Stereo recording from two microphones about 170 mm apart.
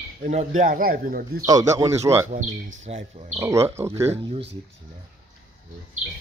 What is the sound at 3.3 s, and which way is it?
Speech, 15° right (ahead or behind).